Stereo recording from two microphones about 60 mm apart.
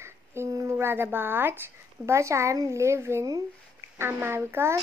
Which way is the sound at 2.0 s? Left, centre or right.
Right.